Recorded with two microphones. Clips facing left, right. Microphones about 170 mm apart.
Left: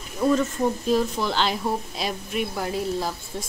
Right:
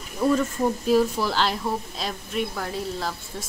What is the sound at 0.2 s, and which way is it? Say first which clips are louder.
Speech: left 1 dB; 5° left (ahead or behind).